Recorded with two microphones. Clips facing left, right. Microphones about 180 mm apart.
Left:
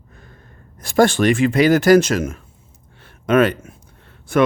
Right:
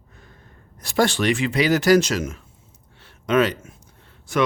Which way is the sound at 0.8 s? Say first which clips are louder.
Left 6 dB; 50° left (ahead or behind).